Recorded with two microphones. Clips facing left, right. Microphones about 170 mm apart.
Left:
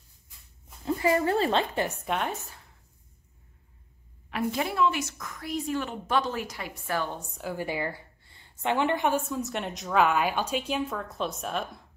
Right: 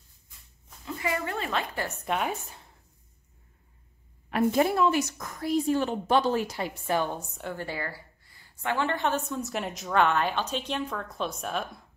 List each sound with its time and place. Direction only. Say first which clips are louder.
0.8 s a woman's voice: left 7 dB; 35° left (ahead or behind)
2.0 s a woman's voice: right 1 dB; 5° right (ahead or behind)
4.3 s a woman's voice: right 6 dB; 45° right (ahead or behind); by 7.0 s 30° right (ahead or behind)
7.0 s a woman's voice: right 1 dB; 10° right (ahead or behind)
7.3 s a woman's voice: left 2 dB; 5° left (ahead or behind)
7.6 s a woman's voice: left 3 dB; 15° left (ahead or behind)
9.3 s a woman's voice: even; centre (ahead or behind)